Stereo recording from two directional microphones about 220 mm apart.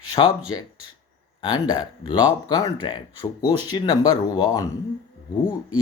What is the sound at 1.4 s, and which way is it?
Speech, 20° left (ahead or behind).